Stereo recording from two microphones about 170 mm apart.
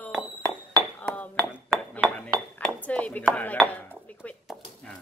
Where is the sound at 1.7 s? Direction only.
Centre (ahead or behind).